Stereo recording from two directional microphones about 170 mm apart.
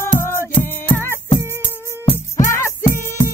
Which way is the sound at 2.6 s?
15° left (ahead or behind).